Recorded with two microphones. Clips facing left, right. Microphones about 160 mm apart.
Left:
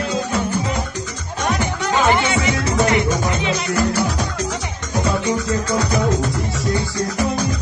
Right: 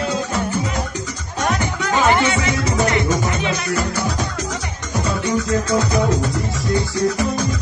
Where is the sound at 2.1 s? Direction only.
15° left (ahead or behind).